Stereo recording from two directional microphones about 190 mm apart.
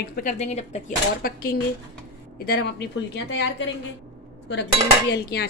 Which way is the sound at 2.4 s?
60° left (ahead or behind).